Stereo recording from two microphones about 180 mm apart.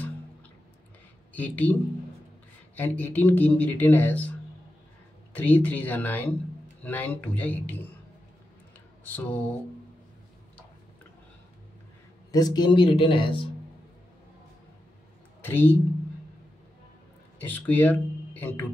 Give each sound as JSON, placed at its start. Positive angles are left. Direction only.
{"t": 1.3, "sound": "speech", "side_deg": 10}
{"t": 9.0, "sound": "speech", "side_deg": 10}
{"t": 12.3, "sound": "speech", "side_deg": 20}
{"t": 15.4, "sound": "speech", "side_deg": 10}
{"t": 17.4, "sound": "speech", "side_deg": 10}